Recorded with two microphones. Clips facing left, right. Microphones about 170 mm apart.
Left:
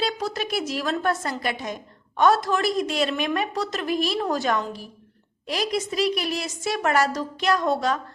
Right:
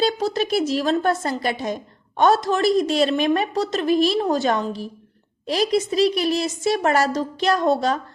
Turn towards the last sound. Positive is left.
turn(degrees=-30)  # may be behind; listen again after turning